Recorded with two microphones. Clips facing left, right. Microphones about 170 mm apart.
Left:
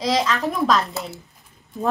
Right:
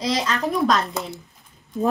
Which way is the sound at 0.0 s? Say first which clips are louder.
Left 2 dB; centre (ahead or behind).